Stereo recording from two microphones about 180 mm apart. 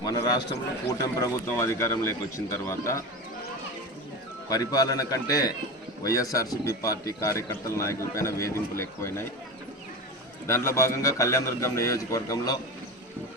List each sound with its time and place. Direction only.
0.0 s a man's voice: 20° left (ahead or behind)
4.4 s a man's voice: 20° left (ahead or behind)
10.4 s a man's voice: 15° left (ahead or behind)